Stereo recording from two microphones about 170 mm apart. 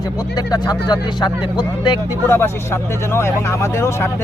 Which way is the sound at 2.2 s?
15° left (ahead or behind).